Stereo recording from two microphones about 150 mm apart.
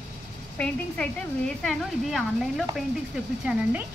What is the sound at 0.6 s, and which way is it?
Speech, 5° left (ahead or behind).